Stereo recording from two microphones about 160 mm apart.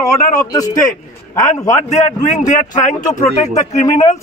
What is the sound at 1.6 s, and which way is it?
A man's voice, 50° left (ahead or behind).